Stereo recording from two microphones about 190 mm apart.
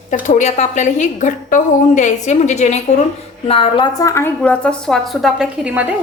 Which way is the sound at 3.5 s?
25° left (ahead or behind).